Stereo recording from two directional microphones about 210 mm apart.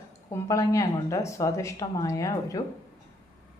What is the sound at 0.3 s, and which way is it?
Speech, 15° left (ahead or behind).